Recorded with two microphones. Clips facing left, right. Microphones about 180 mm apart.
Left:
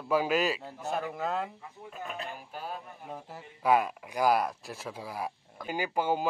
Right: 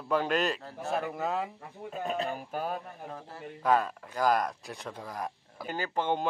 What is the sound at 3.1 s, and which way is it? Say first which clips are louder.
Speech: left 3 dB; 15° left (ahead or behind).